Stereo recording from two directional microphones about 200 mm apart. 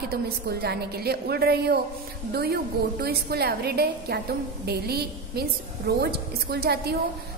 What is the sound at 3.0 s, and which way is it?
A woman's voice, 50° right (ahead or behind).